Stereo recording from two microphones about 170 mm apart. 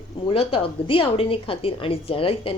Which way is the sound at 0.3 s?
30° left (ahead or behind).